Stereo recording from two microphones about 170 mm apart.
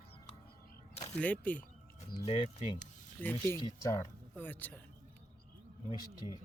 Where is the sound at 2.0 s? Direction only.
40° left (ahead or behind).